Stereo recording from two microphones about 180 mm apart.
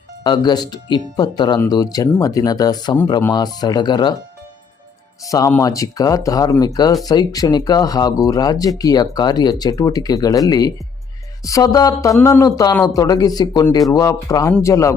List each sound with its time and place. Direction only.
0.3 s speech: 25° left (ahead or behind)
5.2 s speech: 20° left (ahead or behind)